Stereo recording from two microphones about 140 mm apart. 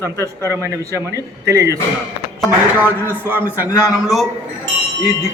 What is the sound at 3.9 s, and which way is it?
Speech, centre (ahead or behind).